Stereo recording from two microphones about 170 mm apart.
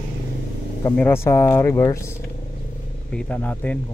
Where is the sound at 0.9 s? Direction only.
15° left (ahead or behind).